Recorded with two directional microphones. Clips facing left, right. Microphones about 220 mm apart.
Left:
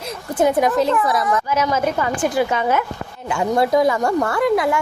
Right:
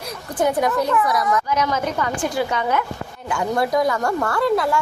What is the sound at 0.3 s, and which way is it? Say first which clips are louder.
A woman's voice: left 3 dB; 20° left (ahead or behind).